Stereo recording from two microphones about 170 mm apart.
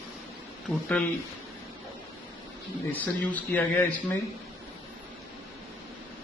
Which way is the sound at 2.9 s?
10° left (ahead or behind).